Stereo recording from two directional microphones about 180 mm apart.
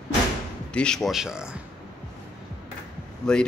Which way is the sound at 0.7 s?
5° left (ahead or behind).